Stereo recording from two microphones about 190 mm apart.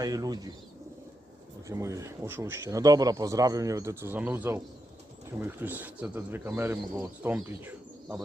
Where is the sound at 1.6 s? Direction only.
15° right (ahead or behind).